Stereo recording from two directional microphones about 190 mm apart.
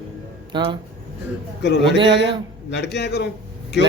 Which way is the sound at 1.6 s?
65° left (ahead or behind).